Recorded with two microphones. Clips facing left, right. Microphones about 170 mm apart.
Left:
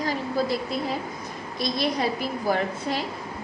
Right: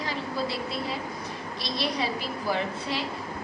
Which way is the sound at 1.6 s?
50° left (ahead or behind).